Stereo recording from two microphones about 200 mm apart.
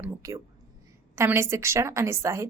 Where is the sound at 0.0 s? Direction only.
15° right (ahead or behind).